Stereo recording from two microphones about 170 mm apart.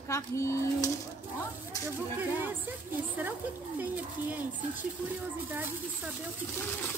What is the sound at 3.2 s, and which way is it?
Speech, 10° right (ahead or behind).